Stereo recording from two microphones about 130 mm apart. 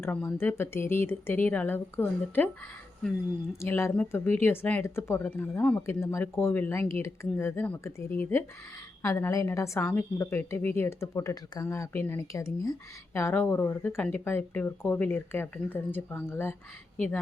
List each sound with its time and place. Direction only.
0.0 s speech: 10° left (ahead or behind)
3.6 s speech: 20° left (ahead or behind)